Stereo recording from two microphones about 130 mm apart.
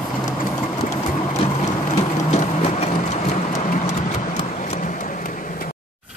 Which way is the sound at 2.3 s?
60° left (ahead or behind).